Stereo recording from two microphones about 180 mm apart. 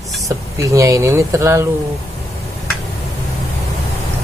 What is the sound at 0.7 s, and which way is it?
Speech, 15° right (ahead or behind).